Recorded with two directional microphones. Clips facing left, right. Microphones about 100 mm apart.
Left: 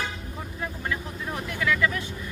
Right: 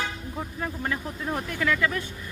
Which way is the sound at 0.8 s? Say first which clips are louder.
Right 1 dB; 40° right (ahead or behind).